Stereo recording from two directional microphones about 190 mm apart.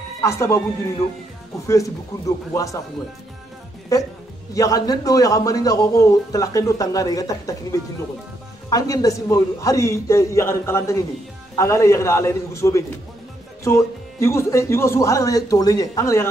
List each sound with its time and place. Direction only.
0.2 s speech: 15° left (ahead or behind)
1.7 s speech: 15° left (ahead or behind)
3.9 s speech: 15° left (ahead or behind)
8.6 s speech: 20° left (ahead or behind)